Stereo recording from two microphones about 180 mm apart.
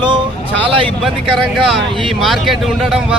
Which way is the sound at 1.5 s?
Centre (ahead or behind).